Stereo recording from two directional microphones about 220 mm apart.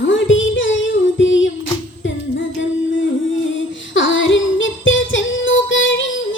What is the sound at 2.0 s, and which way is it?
Music, 55° left (ahead or behind).